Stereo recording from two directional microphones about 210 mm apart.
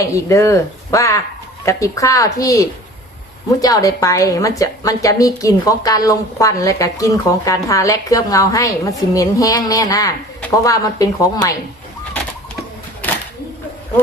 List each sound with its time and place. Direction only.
0.1 s a woman's voice: 15° left (ahead or behind)